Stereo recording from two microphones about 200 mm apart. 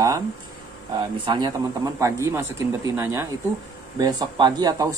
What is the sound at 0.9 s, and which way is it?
Speech, 25° right (ahead or behind).